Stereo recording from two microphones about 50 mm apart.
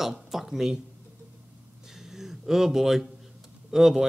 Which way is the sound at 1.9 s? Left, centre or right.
Centre.